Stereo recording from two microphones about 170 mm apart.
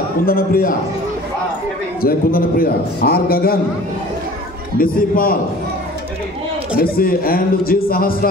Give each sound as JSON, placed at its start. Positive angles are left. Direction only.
{"t": 0.2, "sound": "a man's voice", "side_deg": 60}
{"t": 2.0, "sound": "a man's voice", "side_deg": 60}
{"t": 4.7, "sound": "a man's voice", "side_deg": 55}
{"t": 6.8, "sound": "a man's voice", "side_deg": 60}